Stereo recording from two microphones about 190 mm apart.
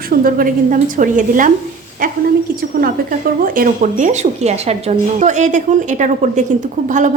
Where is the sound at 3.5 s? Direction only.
40° right (ahead or behind).